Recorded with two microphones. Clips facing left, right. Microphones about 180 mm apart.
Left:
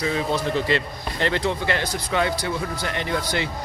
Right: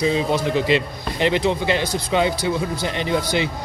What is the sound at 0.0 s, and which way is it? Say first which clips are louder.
Speech: right 4 dB; 20° right (ahead or behind).